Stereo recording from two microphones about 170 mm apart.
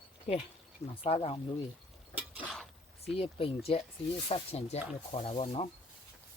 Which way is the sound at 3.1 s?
35° left (ahead or behind).